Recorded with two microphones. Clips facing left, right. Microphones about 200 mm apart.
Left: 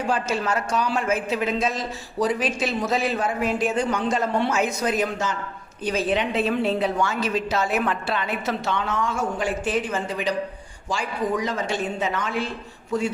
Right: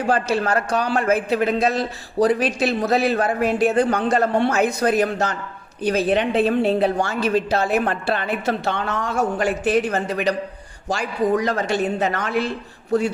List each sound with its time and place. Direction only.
0.1 s a man's voice: 60° right (ahead or behind)